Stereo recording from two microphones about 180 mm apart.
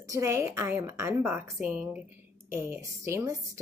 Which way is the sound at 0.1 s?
15° right (ahead or behind).